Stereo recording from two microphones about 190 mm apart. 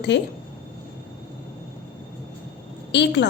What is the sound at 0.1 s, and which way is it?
Speech, 70° left (ahead or behind).